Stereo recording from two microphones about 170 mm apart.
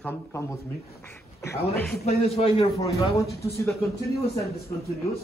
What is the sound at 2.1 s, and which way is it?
A man's voice, 35° left (ahead or behind).